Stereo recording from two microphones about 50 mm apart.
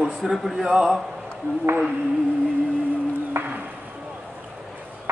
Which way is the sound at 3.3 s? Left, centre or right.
Right.